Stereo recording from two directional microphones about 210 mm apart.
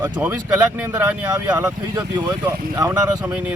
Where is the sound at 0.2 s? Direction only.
10° right (ahead or behind).